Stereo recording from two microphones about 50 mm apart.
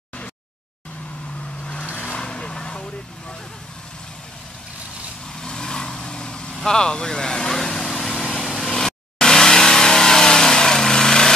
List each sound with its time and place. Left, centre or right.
1.6 s vehicle: left
5.4 s vehicle: centre